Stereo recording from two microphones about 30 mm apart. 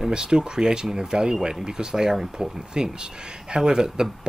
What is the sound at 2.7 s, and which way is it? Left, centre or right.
Speech, right.